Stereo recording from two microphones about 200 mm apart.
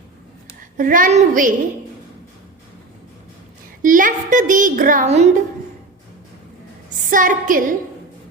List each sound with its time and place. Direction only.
0.8 s a child's voice: 40° right (ahead or behind)
3.8 s a child's voice: 40° right (ahead or behind)
7.1 s a child's voice: 40° right (ahead or behind)